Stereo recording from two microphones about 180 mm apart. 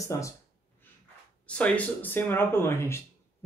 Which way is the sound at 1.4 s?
5° left (ahead or behind).